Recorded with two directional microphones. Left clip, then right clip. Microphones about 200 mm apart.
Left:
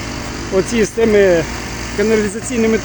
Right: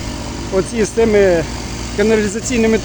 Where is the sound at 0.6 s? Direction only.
10° left (ahead or behind).